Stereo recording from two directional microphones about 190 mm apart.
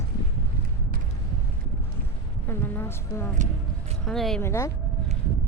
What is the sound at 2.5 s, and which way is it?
Speech, 10° left (ahead or behind).